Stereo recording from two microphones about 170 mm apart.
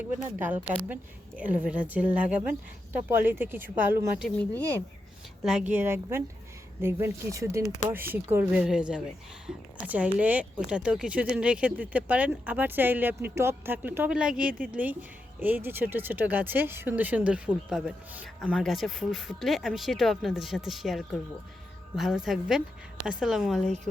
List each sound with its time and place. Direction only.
0.3 s speech: 10° right (ahead or behind)
5.4 s speech: 5° right (ahead or behind)